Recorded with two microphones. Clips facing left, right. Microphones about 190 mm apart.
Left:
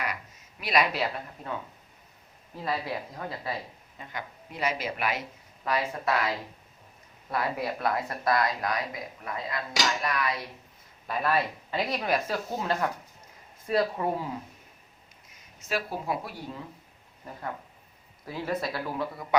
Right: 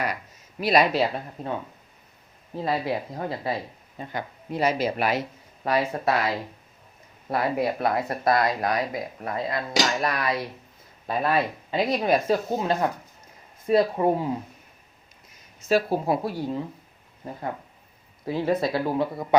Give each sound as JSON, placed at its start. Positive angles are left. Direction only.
{"t": 0.6, "sound": "speech", "side_deg": -30}
{"t": 2.6, "sound": "speech", "side_deg": -25}
{"t": 11.0, "sound": "speech", "side_deg": -25}
{"t": 15.7, "sound": "speech", "side_deg": -30}
{"t": 18.3, "sound": "speech", "side_deg": -25}